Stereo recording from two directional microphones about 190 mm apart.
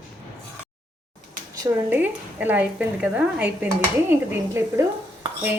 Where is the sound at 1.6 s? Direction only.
10° right (ahead or behind).